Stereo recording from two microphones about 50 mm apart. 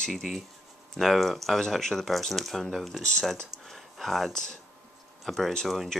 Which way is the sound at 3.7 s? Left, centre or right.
Centre.